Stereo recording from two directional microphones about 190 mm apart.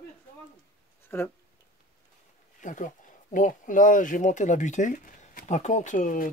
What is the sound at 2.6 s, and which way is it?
Speech, 40° left (ahead or behind).